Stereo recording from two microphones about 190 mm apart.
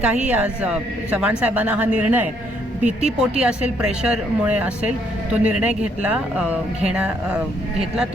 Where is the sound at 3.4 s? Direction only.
5° right (ahead or behind).